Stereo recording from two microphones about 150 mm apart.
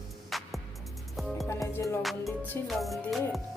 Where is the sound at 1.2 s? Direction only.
Centre (ahead or behind).